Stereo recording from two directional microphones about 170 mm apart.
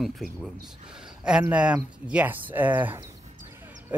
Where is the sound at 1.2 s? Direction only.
5° right (ahead or behind).